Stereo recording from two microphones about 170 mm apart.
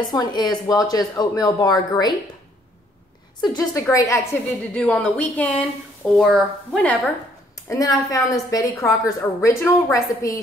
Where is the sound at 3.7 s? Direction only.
20° left (ahead or behind); by 7.1 s 5° left (ahead or behind).